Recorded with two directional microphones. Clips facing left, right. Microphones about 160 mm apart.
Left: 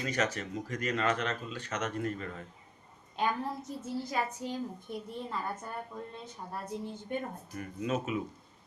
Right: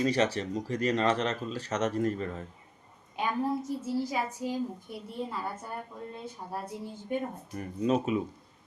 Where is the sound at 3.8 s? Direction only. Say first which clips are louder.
Right 3 dB; 10° right (ahead or behind).